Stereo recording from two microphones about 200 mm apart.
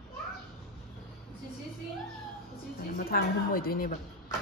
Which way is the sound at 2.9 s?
50° left (ahead or behind).